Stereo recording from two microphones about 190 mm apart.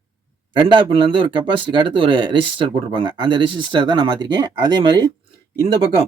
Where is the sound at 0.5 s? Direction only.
25° right (ahead or behind).